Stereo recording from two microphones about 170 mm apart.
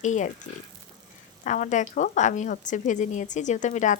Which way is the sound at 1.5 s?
45° left (ahead or behind).